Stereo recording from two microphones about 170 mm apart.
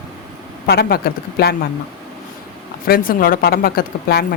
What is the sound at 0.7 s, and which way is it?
Speech, 65° left (ahead or behind).